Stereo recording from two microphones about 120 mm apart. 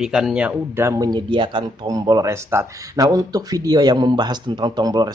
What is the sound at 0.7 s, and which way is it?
Speech, 20° right (ahead or behind).